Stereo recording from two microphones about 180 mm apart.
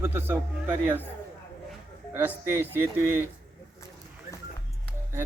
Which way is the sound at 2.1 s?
10° right (ahead or behind).